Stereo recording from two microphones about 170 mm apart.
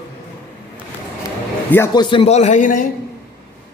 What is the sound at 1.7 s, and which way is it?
Speech, 20° left (ahead or behind).